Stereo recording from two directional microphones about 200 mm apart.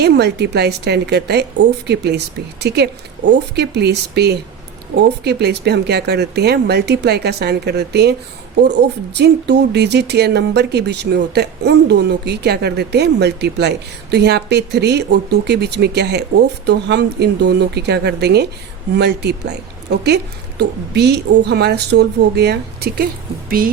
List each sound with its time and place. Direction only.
0.0 s a woman's voice: 55° right (ahead or behind)
20.6 s a woman's voice: 55° right (ahead or behind)